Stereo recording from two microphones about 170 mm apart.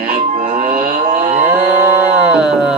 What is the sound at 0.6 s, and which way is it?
Cattle, 55° right (ahead or behind).